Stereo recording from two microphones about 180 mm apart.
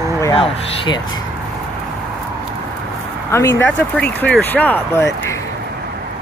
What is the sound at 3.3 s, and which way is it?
Speech, 15° left (ahead or behind).